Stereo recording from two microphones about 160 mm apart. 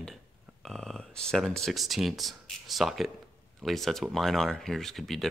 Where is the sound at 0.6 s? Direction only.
Centre (ahead or behind).